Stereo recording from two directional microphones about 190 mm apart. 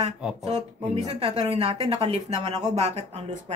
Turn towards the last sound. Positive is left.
turn(degrees=-35)  # may be behind; listen again after turning